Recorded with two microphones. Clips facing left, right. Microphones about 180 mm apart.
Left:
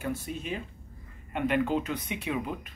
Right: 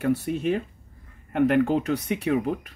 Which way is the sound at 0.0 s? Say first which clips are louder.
Right 10 dB; 70° right (ahead or behind).